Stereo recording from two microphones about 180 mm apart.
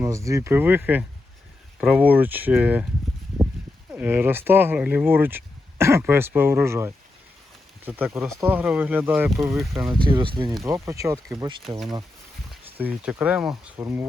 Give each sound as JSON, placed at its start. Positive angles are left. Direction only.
{"t": 0.0, "sound": "speech", "side_deg": -15}
{"t": 3.9, "sound": "speech", "side_deg": -10}
{"t": 9.8, "sound": "speech", "side_deg": -25}
{"t": 12.7, "sound": "speech", "side_deg": -10}